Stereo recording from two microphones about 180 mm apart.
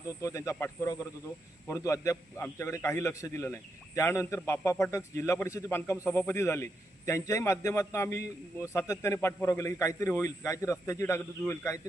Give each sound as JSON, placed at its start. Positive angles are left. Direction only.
{"t": 0.2, "sound": "a man's voice", "side_deg": 15}